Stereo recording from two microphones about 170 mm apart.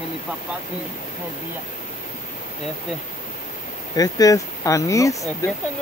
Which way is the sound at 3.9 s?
20° left (ahead or behind).